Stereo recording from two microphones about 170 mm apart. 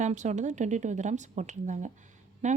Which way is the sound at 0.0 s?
45° right (ahead or behind).